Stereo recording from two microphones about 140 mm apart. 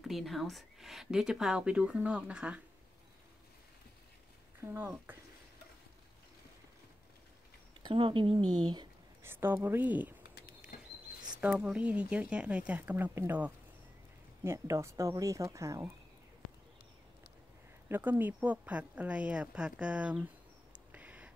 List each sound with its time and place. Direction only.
0.0 s speech: centre (ahead or behind)
4.6 s speech: 20° right (ahead or behind)
7.8 s speech: 35° right (ahead or behind)
9.2 s speech: 15° right (ahead or behind)
11.4 s speech: 10° right (ahead or behind)
17.8 s speech: 15° right (ahead or behind)
20.9 s a sound: 10° right (ahead or behind)